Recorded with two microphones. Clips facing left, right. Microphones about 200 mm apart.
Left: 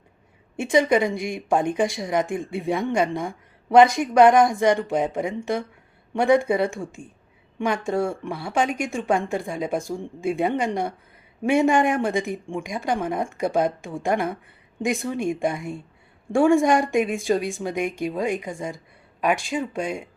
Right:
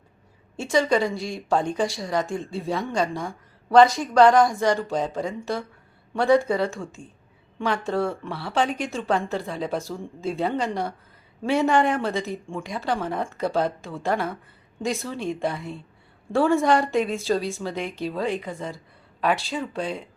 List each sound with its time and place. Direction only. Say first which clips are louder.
0.6 s a woman's voice: left 2 dB; 20° left (ahead or behind)